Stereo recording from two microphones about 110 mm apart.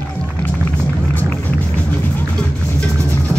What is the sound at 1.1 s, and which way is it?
Music, 15° left (ahead or behind).